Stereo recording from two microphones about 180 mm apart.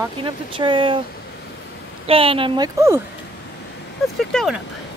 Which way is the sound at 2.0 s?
30° right (ahead or behind).